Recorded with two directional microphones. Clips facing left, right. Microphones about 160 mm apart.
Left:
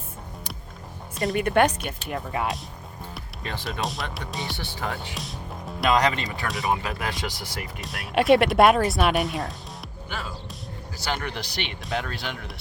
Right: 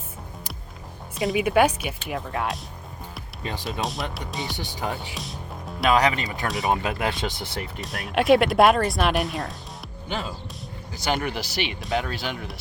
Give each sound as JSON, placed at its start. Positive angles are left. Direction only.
{"t": 1.1, "sound": "speech", "side_deg": 0}
{"t": 3.4, "sound": "speech", "side_deg": -15}
{"t": 3.8, "sound": "speech", "side_deg": 0}
{"t": 4.5, "sound": "speech", "side_deg": -15}
{"t": 5.1, "sound": "speech", "side_deg": 0}
{"t": 6.7, "sound": "speech", "side_deg": -25}
{"t": 7.8, "sound": "speech", "side_deg": 0}
{"t": 10.9, "sound": "speech", "side_deg": -15}